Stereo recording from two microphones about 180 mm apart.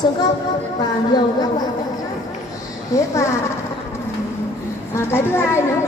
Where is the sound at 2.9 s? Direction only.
15° left (ahead or behind).